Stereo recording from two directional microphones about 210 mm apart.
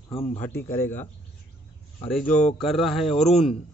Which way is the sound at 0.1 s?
30° left (ahead or behind).